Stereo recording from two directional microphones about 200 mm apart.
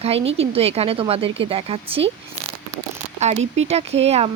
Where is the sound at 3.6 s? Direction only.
30° right (ahead or behind).